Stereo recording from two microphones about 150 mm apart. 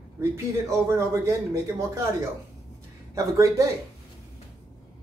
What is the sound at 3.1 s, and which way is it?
Speech, 20° right (ahead or behind).